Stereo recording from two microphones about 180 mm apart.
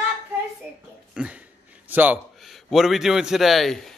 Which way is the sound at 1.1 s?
5° right (ahead or behind).